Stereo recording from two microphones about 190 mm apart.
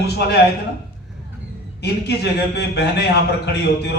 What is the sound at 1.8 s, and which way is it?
A man's voice, 60° left (ahead or behind).